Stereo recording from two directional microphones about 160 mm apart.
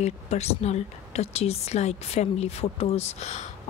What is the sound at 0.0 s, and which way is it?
A woman's voice, 40° left (ahead or behind).